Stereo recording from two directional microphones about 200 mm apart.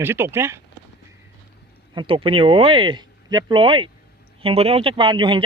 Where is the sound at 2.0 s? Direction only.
25° right (ahead or behind).